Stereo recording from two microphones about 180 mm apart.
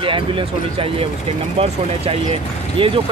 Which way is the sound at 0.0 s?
30° right (ahead or behind).